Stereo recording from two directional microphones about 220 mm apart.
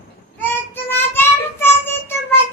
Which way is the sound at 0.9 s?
10° left (ahead or behind).